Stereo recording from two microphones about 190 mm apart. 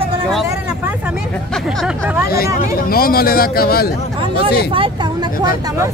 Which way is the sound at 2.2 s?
50° left (ahead or behind).